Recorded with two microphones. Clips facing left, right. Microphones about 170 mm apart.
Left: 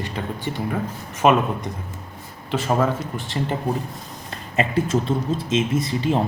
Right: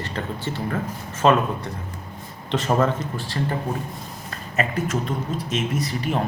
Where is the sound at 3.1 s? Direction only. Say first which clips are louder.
Left 1 dB; 20° left (ahead or behind).